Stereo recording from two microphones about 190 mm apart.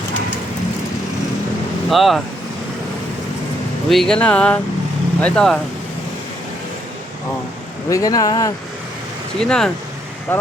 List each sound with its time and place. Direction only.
1.9 s speech: centre (ahead or behind)
3.8 s speech: centre (ahead or behind)
7.9 s speech: 15° left (ahead or behind)
9.4 s speech: 5° left (ahead or behind)